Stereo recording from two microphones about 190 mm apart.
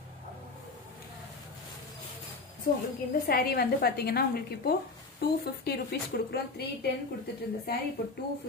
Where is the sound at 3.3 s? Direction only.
55° left (ahead or behind).